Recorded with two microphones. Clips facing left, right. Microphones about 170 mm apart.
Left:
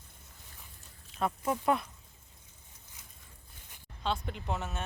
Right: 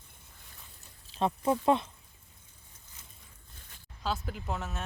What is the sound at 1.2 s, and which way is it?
Speech, 30° right (ahead or behind).